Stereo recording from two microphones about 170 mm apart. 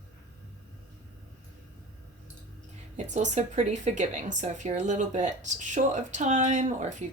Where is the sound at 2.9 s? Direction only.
45° right (ahead or behind).